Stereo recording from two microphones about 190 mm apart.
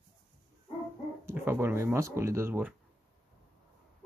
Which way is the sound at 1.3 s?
10° right (ahead or behind).